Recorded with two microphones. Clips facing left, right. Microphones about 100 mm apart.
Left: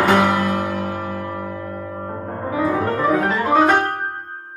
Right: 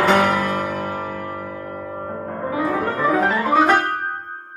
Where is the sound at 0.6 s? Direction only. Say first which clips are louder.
Left 1 dB; centre (ahead or behind).